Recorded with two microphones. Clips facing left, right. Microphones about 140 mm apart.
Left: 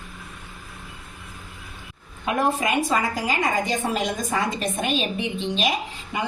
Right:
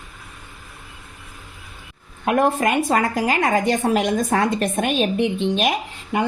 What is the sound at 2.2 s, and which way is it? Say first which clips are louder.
A woman's voice: right 5 dB; 55° right (ahead or behind).